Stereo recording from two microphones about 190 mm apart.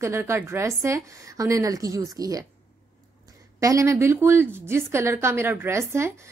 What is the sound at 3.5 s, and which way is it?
A woman's voice, 15° right (ahead or behind).